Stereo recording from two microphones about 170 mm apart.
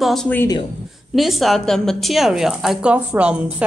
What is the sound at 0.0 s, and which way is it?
Speech, 5° left (ahead or behind).